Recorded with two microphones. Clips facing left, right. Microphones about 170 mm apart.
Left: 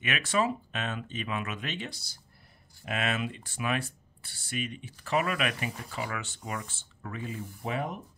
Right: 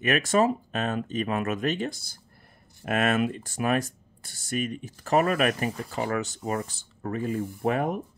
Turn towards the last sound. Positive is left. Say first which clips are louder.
# right 8 dB
turn(degrees=-50)  # may be behind; listen again after turning